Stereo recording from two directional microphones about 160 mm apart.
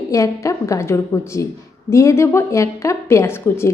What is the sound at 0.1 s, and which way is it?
A woman's voice, 20° left (ahead or behind).